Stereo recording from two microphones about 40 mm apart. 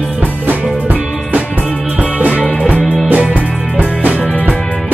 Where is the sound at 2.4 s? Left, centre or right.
Centre.